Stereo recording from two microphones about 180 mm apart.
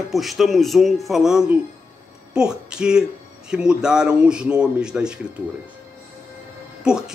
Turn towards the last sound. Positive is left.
turn(degrees=-5)  # may be behind; listen again after turning